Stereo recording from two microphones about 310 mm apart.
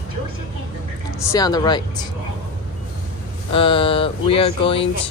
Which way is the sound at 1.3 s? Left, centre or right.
Centre.